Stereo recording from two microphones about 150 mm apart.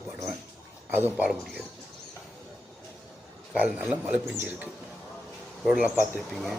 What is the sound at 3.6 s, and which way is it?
A man's voice, 10° right (ahead or behind).